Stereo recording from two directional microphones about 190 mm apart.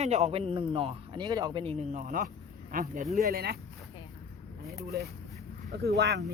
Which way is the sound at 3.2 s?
55° right (ahead or behind).